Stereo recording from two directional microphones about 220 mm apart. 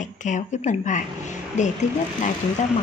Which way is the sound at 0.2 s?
35° left (ahead or behind).